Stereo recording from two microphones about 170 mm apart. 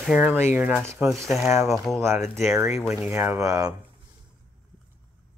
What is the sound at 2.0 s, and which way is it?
Speech, 15° right (ahead or behind).